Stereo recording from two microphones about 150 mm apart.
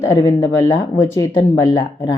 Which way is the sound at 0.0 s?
20° left (ahead or behind).